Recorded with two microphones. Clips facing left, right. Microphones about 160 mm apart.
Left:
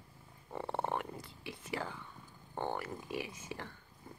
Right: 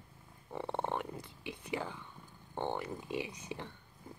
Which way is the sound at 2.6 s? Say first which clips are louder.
Right 1 dB; 20° right (ahead or behind).